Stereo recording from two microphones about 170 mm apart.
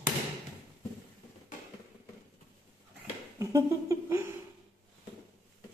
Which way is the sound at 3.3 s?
15° right (ahead or behind).